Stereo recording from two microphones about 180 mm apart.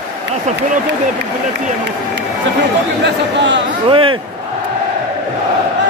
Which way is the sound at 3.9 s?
30° right (ahead or behind).